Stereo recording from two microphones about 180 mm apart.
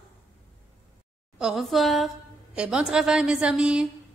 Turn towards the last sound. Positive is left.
turn(degrees=-5)  # may be behind; listen again after turning